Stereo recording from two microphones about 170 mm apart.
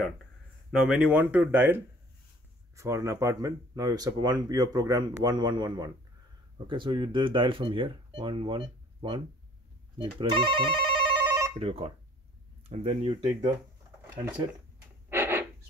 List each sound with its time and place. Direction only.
0.7 s speech: 5° right (ahead or behind); by 9.2 s 30° right (ahead or behind)
10.2 s speech: 30° right (ahead or behind)
11.2 s telephone bell ringing: 10° right (ahead or behind)
11.6 s speech: 35° right (ahead or behind)
15.0 s a sound: 15° right (ahead or behind)